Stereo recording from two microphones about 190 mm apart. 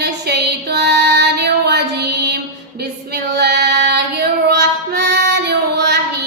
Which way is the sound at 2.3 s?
60° right (ahead or behind).